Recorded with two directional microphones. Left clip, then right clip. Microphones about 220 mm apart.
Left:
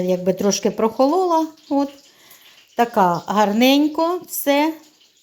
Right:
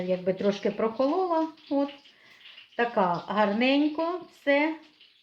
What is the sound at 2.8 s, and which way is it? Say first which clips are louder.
Speech: left 9 dB; 50° left (ahead or behind).